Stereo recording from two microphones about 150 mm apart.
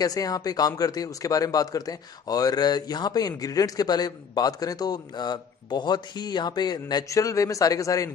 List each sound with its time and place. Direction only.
0.0 s speech: 25° left (ahead or behind)